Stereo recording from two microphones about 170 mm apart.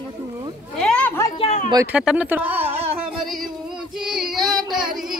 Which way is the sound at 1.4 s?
40° left (ahead or behind).